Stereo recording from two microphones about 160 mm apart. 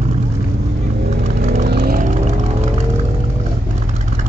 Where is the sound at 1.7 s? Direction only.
80° right.